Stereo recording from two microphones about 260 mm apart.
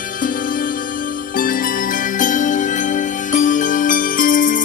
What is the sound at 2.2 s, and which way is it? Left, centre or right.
Music, left.